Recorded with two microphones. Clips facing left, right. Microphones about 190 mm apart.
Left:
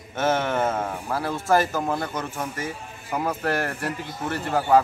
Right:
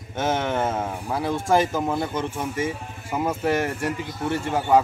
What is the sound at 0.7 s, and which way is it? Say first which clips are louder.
Speech: even; centre (ahead or behind).